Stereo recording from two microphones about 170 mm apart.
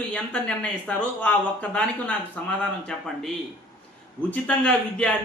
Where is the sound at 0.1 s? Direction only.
10° left (ahead or behind).